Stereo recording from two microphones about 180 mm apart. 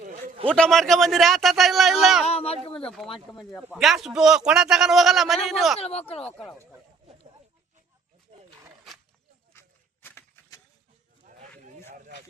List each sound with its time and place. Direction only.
0.4 s a man's voice: 5° left (ahead or behind)
2.2 s speech: 35° left (ahead or behind)
2.8 s a man's voice: centre (ahead or behind)
5.8 s speech: 35° left (ahead or behind)
6.2 s speech: 5° left (ahead or behind)
8.3 s wild animals: 35° right (ahead or behind)
9.5 s a sound: 10° left (ahead or behind)
11.9 s a sound: 45° right (ahead or behind)